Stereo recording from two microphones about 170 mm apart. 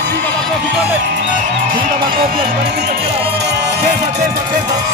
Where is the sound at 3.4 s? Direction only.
80° right.